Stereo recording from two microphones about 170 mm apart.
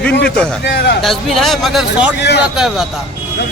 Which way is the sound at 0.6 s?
70° left (ahead or behind).